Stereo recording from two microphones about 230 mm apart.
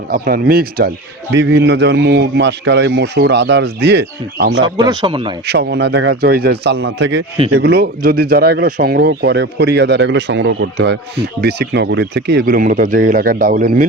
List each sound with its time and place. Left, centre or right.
0.1 s speech: right
4.6 s speech: centre
5.5 s speech: right